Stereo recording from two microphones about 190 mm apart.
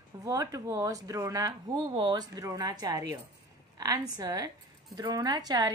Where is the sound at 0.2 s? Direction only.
15° right (ahead or behind).